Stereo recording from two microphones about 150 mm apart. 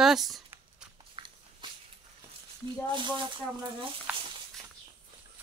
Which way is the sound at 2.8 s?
30° right (ahead or behind).